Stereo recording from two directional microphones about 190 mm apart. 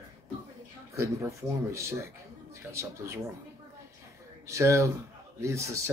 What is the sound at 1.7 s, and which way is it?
Speech, 15° right (ahead or behind).